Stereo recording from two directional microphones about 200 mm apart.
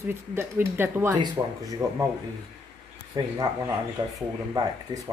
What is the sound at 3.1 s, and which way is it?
Speech, 20° right (ahead or behind).